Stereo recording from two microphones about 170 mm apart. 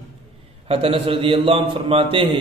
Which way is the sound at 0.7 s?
35° right (ahead or behind).